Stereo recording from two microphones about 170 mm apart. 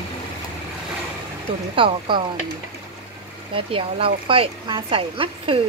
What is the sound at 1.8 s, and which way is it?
Speech, 30° right (ahead or behind).